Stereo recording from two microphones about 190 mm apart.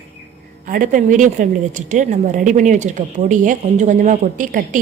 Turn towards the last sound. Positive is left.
turn(degrees=-45)  # may be behind; listen again after turning